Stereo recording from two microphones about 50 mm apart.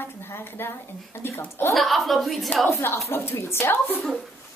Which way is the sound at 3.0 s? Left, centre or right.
Left.